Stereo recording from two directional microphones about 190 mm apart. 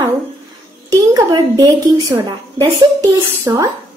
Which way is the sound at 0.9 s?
20° right (ahead or behind).